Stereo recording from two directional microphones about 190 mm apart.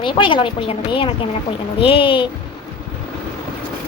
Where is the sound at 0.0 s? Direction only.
25° left (ahead or behind).